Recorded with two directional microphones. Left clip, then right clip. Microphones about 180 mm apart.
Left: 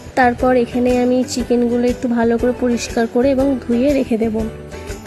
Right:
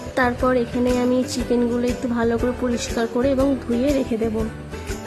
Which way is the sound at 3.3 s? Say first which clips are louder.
Left 4 dB; centre (ahead or behind).